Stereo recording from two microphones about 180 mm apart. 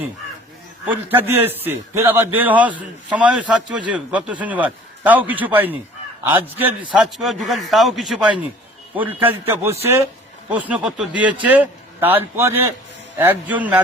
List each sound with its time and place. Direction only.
0.9 s a man's voice: 10° right (ahead or behind)
2.6 s a man's voice: 25° right (ahead or behind)
3.2 s a man's voice: 5° right (ahead or behind)